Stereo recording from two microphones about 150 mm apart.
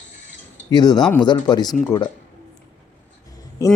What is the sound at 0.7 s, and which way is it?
A woman's voice, 25° left (ahead or behind).